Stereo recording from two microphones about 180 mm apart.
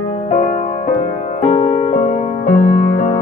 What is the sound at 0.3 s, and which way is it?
Music, 40° left (ahead or behind).